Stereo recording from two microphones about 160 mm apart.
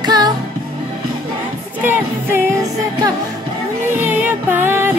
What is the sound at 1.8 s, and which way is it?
Music, 15° right (ahead or behind).